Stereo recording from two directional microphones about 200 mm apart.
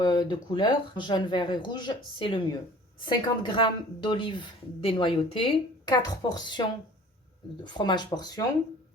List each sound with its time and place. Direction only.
0.0 s a woman's voice: 20° left (ahead or behind)